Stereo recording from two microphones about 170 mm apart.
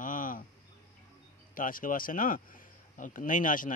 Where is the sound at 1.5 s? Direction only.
55° left (ahead or behind).